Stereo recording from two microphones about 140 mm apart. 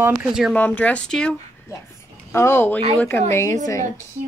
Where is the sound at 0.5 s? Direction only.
10° left (ahead or behind).